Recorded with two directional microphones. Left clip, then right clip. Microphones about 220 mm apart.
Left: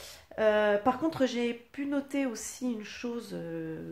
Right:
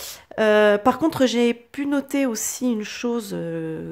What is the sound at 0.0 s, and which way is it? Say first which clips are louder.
Speech: right 7 dB; 45° right (ahead or behind).